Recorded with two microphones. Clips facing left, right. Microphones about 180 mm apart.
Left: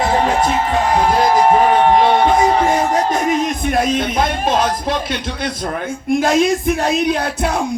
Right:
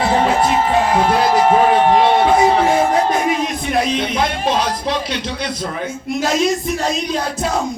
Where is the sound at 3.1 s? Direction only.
50° left (ahead or behind).